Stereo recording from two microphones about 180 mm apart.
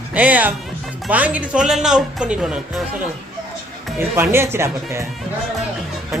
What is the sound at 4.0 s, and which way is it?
Speech, 10° right (ahead or behind).